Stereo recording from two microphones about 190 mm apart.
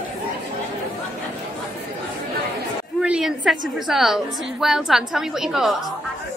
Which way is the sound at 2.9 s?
5° right (ahead or behind).